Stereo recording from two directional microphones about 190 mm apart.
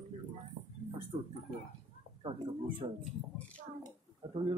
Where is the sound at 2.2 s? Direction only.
30° right (ahead or behind).